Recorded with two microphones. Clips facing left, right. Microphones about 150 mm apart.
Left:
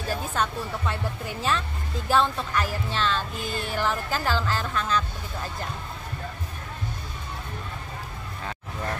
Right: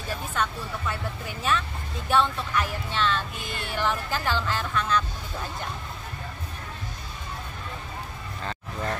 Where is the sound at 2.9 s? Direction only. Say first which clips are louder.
Even; 35° left (ahead or behind).